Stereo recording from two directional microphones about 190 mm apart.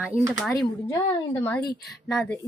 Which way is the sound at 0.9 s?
15° left (ahead or behind).